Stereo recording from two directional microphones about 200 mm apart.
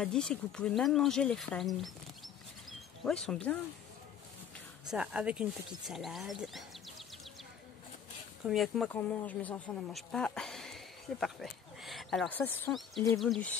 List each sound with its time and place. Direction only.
0.0 s speech: 5° left (ahead or behind)
4.9 s speech: 5° right (ahead or behind)
8.5 s speech: centre (ahead or behind)